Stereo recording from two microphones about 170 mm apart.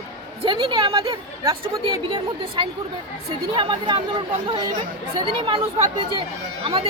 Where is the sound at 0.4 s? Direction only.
30° right (ahead or behind).